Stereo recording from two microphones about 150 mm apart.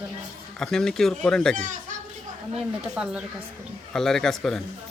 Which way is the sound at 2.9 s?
5° right (ahead or behind).